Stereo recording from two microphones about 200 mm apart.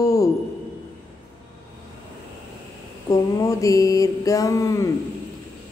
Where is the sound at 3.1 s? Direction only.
15° left (ahead or behind).